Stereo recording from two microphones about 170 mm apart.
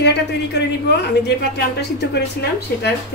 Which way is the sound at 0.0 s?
80° left.